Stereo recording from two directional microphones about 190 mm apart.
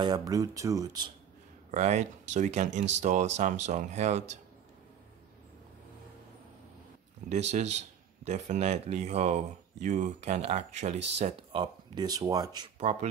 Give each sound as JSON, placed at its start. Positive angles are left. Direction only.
{"t": 0.0, "sound": "speech", "side_deg": -20}
{"t": 1.7, "sound": "speech", "side_deg": -40}
{"t": 7.2, "sound": "speech", "side_deg": -35}
{"t": 11.6, "sound": "speech", "side_deg": -20}
{"t": 12.7, "sound": "speech", "side_deg": -35}